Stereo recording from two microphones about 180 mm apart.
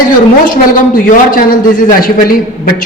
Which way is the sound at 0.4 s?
50° left (ahead or behind).